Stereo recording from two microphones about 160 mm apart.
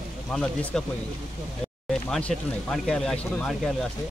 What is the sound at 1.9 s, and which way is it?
Speech, 5° left (ahead or behind).